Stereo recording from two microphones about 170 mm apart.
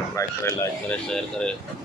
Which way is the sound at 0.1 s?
15° left (ahead or behind).